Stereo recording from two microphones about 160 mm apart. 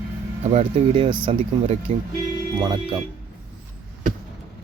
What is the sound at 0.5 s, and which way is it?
Speech, 35° right (ahead or behind).